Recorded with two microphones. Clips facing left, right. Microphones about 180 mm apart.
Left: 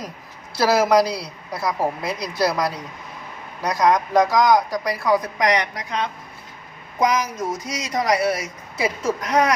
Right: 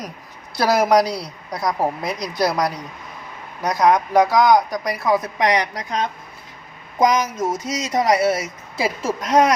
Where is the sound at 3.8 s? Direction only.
10° right (ahead or behind).